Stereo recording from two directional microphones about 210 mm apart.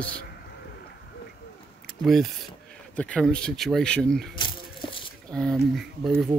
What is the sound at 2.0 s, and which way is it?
Speech, centre (ahead or behind).